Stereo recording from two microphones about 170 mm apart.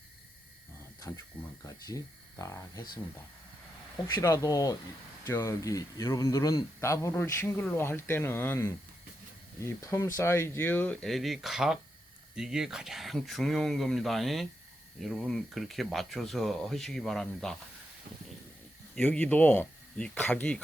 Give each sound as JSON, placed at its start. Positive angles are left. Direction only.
{"t": 0.9, "sound": "a sound", "side_deg": 20}
{"t": 1.6, "sound": "speech", "side_deg": 20}
{"t": 3.9, "sound": "a man's voice", "side_deg": 20}
{"t": 18.9, "sound": "a man's voice", "side_deg": 5}